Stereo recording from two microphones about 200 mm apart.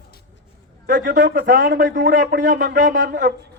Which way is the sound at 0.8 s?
45° right (ahead or behind).